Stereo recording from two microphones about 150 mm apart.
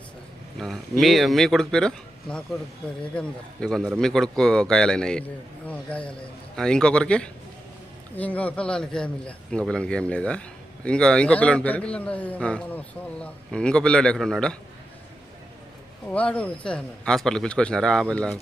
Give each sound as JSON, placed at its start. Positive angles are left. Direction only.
{"t": 0.6, "sound": "a man's voice", "side_deg": 0}
{"t": 16.0, "sound": "a man's voice", "side_deg": 10}